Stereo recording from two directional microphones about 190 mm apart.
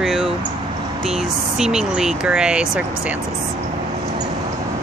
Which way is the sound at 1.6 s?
5° right (ahead or behind).